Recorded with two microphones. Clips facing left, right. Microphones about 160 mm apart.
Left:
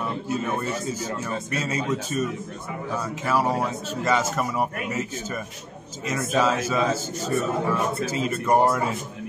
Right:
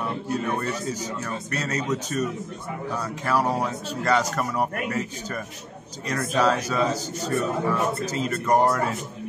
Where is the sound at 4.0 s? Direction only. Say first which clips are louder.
Even; 5° left (ahead or behind).